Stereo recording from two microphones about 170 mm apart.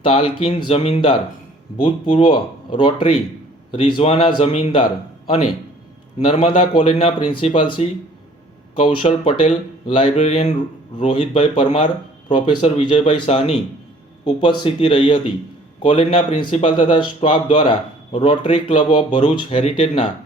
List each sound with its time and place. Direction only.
0.0 s a man's voice: 30° left (ahead or behind)